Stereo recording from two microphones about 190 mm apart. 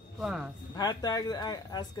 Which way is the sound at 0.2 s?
5° right (ahead or behind).